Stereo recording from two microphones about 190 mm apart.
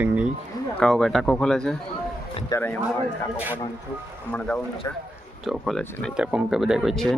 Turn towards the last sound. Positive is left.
turn(degrees=0)  # may be behind; listen again after turning